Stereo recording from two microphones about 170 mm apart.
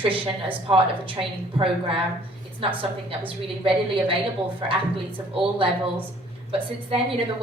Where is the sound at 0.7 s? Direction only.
30° right (ahead or behind).